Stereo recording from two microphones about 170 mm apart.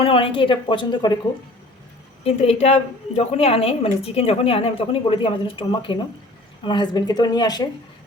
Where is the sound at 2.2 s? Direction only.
35° left (ahead or behind).